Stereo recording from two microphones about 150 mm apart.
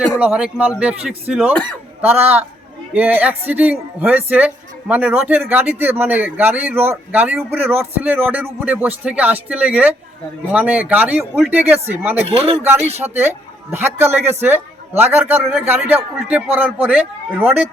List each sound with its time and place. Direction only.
0.2 s speech: 5° right (ahead or behind)
12.2 s speech: 45° right (ahead or behind)
13.0 s speech: 15° right (ahead or behind)
17.4 s speech: 10° right (ahead or behind)